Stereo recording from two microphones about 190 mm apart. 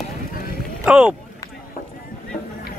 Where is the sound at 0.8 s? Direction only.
5° right (ahead or behind).